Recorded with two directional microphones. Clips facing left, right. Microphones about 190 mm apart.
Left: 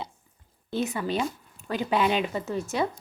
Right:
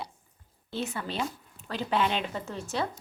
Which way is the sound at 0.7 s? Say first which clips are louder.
Left 6 dB; 15° left (ahead or behind).